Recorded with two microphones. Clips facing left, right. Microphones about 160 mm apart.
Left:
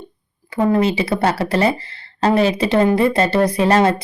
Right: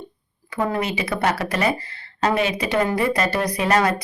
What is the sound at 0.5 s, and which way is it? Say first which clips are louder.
A woman's voice: left 7 dB; 30° left (ahead or behind).